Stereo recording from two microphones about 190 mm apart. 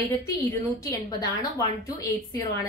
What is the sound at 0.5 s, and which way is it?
A woman's voice, 20° left (ahead or behind).